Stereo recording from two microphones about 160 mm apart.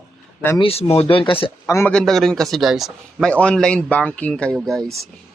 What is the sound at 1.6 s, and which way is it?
Speech, 15° left (ahead or behind).